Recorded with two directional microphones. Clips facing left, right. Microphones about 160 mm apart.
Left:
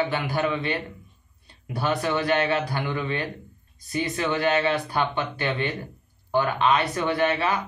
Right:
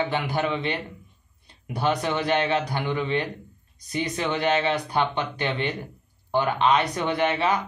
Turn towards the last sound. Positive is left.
turn(degrees=-20)  # may be behind; listen again after turning